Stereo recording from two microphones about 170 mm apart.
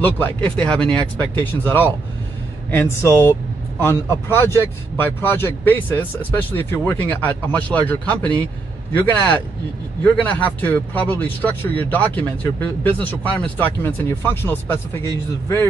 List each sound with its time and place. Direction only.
0.0 s speech: 10° left (ahead or behind)